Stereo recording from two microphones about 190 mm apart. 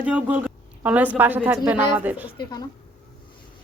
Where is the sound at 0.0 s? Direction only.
10° right (ahead or behind).